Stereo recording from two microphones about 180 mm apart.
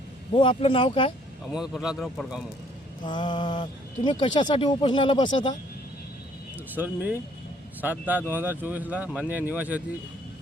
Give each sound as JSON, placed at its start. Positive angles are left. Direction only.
{"t": 0.3, "sound": "speech", "side_deg": 30}
{"t": 1.5, "sound": "speech", "side_deg": -5}
{"t": 3.0, "sound": "speech", "side_deg": 25}
{"t": 6.7, "sound": "speech", "side_deg": -10}